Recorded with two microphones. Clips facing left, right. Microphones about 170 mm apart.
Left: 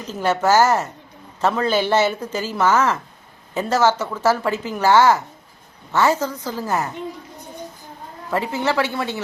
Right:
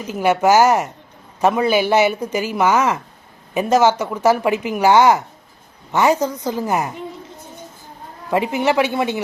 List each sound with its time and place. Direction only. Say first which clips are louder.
0.1 s speech: right 3 dB; 15° right (ahead or behind)
8.3 s speech: right 4 dB; 15° right (ahead or behind)